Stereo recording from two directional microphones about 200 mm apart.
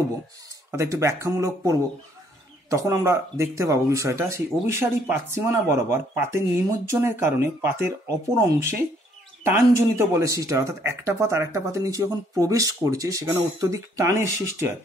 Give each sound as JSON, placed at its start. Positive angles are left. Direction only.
{"t": 0.7, "sound": "speech", "side_deg": -15}